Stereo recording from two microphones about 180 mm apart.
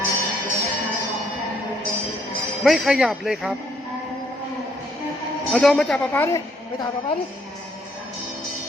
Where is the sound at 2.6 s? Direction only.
5° right (ahead or behind).